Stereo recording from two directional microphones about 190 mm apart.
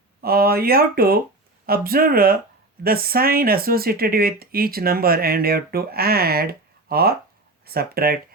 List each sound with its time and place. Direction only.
0.2 s speech: 55° right (ahead or behind)